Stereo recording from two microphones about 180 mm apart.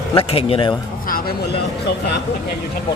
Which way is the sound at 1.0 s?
55° left (ahead or behind).